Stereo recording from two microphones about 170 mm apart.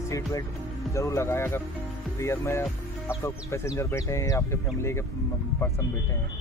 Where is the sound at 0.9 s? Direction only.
15° left (ahead or behind).